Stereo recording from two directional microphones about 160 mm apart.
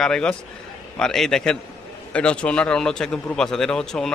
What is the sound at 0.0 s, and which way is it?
Speech, 5° left (ahead or behind).